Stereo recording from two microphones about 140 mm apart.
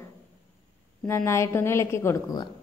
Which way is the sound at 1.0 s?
20° left (ahead or behind).